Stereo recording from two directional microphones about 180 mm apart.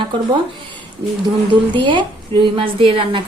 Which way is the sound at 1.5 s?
25° right (ahead or behind).